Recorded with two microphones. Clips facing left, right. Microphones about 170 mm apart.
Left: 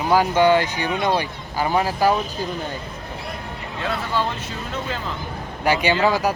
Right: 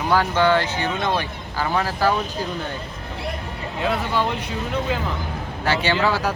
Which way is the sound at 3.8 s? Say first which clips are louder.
Right 2 dB; 15° right (ahead or behind).